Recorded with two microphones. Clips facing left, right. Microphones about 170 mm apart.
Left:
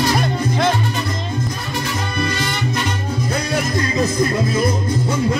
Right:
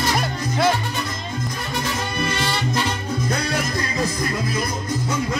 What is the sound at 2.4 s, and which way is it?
Music, 30° right (ahead or behind).